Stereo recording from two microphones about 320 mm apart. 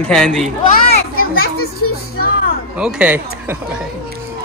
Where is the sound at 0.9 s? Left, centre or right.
Left.